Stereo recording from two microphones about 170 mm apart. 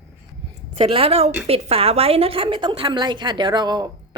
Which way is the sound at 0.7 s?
35° right (ahead or behind).